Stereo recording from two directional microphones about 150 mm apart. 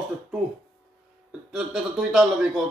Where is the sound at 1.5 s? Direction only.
5° right (ahead or behind).